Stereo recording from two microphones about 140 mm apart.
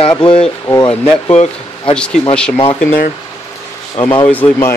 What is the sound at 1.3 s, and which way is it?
Speech, 50° left (ahead or behind).